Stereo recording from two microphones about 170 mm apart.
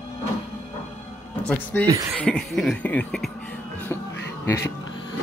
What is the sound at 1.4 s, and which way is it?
Speech, 10° left (ahead or behind).